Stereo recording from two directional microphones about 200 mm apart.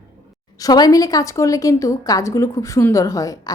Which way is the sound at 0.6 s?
20° left (ahead or behind).